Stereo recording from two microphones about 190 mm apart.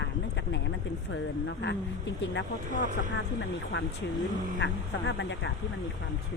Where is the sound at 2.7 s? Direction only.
45° right (ahead or behind).